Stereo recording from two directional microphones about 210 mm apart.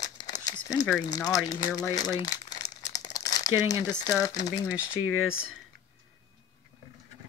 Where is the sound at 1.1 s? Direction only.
20° left (ahead or behind).